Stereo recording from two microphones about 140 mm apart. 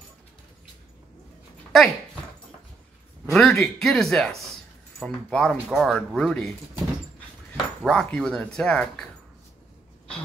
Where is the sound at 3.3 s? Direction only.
5° left (ahead or behind).